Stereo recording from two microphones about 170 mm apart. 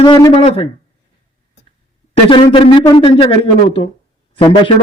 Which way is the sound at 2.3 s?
30° left (ahead or behind).